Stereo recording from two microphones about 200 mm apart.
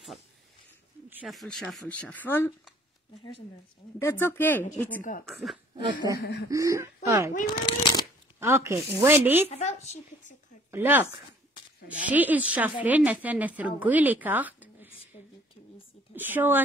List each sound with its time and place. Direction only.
1.1 s speech: centre (ahead or behind)
4.0 s speech: 10° left (ahead or behind)
6.1 s chuckle: 55° left (ahead or behind)
6.5 s a woman's voice: 15° right (ahead or behind)
7.4 s speech: 20° left (ahead or behind)
8.4 s a woman's voice: 10° right (ahead or behind)
9.5 s a woman's voice: 35° left (ahead or behind)
10.7 s a woman's voice: 10° right (ahead or behind)
12.1 s a woman's voice: 10° right (ahead or behind)
16.2 s a woman's voice: 10° right (ahead or behind)